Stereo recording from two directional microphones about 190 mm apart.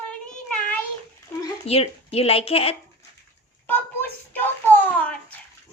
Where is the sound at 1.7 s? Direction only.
30° left (ahead or behind).